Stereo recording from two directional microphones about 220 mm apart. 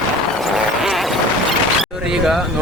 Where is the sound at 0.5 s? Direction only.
Centre (ahead or behind).